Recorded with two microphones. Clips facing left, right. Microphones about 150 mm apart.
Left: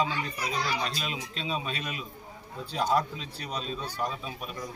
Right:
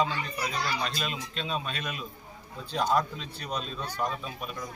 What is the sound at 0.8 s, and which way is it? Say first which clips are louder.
Speech: right 1 dB; centre (ahead or behind).